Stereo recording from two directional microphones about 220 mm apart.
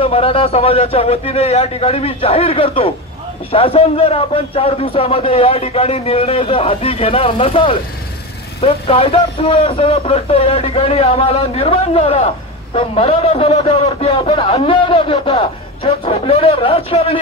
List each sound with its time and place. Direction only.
0.0 s a man's voice: 25° left (ahead or behind)